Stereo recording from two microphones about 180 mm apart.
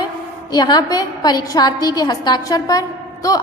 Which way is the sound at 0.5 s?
20° left (ahead or behind).